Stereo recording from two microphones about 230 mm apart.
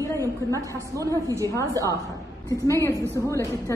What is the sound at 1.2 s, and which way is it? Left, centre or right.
Speech, centre.